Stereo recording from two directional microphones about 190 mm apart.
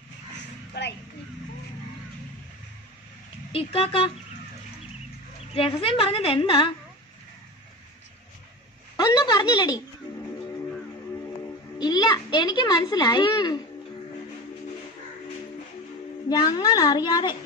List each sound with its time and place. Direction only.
0.8 s speech: 60° left (ahead or behind)
3.5 s speech: 30° left (ahead or behind)
5.5 s speech: 30° left (ahead or behind)
8.9 s a woman's voice: 20° left (ahead or behind)
11.8 s speech: 20° left (ahead or behind)
16.3 s speech: 20° left (ahead or behind)